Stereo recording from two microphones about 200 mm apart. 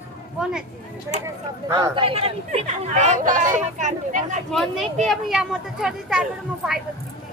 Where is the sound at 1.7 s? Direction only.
20° right (ahead or behind); by 4.3 s 40° right (ahead or behind).